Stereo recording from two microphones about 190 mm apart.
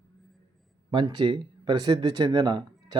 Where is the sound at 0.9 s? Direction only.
25° right (ahead or behind).